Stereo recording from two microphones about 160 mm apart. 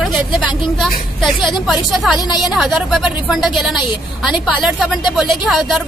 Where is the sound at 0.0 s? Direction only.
5° right (ahead or behind).